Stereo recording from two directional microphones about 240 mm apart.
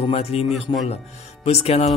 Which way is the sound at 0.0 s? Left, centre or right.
Left.